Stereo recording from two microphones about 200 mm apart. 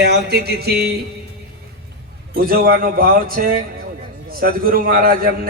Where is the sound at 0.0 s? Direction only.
55° right (ahead or behind).